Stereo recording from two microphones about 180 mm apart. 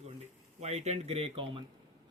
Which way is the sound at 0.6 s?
40° right (ahead or behind).